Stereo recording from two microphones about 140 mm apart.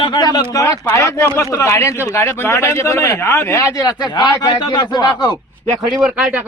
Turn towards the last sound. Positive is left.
turn(degrees=-5)  # may be behind; listen again after turning